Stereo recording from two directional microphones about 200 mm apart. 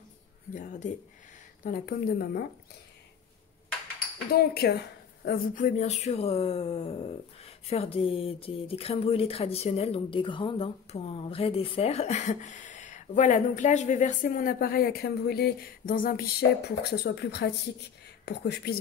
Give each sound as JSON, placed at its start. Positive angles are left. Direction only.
{"t": 0.6, "sound": "a woman's voice", "side_deg": 40}
{"t": 4.3, "sound": "a woman's voice", "side_deg": 55}